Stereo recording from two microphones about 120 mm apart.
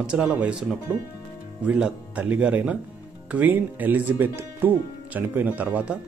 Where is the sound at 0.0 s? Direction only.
10° right (ahead or behind).